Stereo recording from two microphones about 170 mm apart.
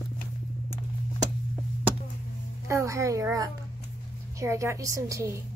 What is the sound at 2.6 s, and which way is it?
A woman's voice, 15° right (ahead or behind).